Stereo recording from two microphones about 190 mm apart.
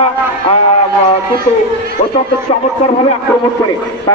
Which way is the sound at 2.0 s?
40° left (ahead or behind).